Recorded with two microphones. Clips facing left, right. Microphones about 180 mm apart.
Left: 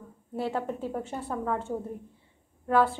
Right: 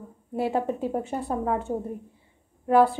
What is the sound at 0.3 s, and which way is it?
A woman's voice, 15° right (ahead or behind).